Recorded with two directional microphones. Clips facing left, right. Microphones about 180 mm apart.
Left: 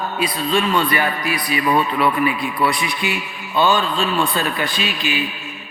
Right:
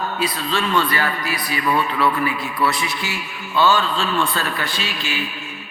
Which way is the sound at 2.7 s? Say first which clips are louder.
Left 3 dB; 15° left (ahead or behind).